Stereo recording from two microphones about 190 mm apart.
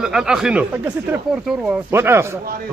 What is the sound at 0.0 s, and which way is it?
A man's voice, 5° right (ahead or behind).